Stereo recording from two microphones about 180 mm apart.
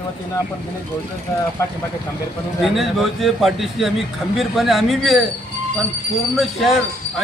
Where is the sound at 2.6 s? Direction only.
Centre (ahead or behind).